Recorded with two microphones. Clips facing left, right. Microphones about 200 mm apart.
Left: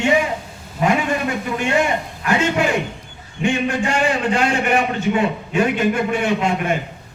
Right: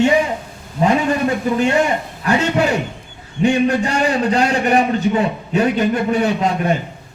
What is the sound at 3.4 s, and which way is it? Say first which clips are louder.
A man's voice: right 4 dB; 35° right (ahead or behind).